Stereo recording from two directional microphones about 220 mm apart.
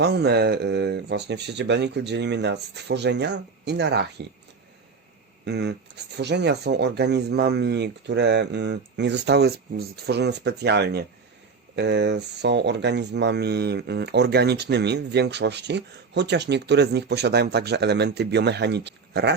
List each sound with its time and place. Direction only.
0.0 s speech: 50° right (ahead or behind)
5.5 s speech: 50° right (ahead or behind)